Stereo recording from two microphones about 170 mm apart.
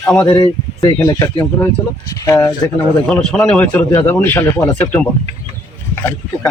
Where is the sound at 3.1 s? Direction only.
5° left (ahead or behind).